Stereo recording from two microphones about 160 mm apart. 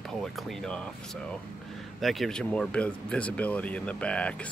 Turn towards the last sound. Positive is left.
turn(degrees=5)  # may be behind; listen again after turning